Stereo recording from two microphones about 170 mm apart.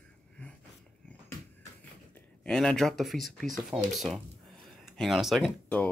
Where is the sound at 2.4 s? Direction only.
5° left (ahead or behind).